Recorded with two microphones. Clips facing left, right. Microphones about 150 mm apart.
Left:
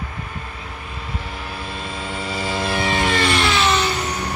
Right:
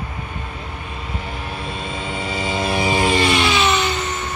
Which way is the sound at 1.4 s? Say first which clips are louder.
Right 2 dB; centre (ahead or behind).